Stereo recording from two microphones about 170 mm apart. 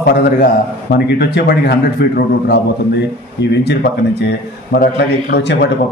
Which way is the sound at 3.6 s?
75° left (ahead or behind).